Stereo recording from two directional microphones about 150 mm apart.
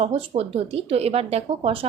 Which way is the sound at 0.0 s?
45° right (ahead or behind).